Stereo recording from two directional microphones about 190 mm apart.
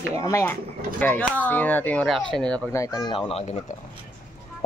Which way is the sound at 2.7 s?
20° left (ahead or behind).